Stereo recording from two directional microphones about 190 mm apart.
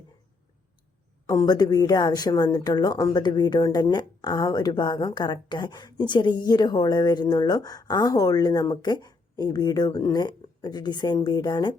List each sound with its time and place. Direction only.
1.3 s a woman's voice: 20° left (ahead or behind)